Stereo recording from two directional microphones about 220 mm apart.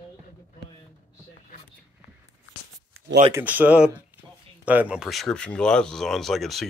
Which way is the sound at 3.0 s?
70° right (ahead or behind).